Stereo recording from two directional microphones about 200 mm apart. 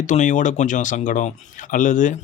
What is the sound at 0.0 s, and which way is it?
Speech, 40° left (ahead or behind).